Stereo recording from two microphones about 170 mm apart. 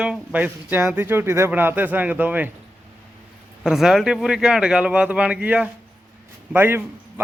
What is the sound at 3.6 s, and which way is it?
A man's voice, centre (ahead or behind).